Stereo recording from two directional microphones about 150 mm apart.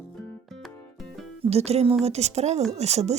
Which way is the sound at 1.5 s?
45° right (ahead or behind).